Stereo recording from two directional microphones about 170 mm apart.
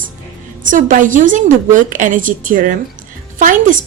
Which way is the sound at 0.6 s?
50° right (ahead or behind).